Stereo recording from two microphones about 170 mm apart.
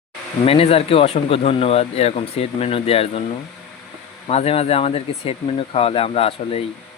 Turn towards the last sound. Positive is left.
turn(degrees=35)  # may be behind; listen again after turning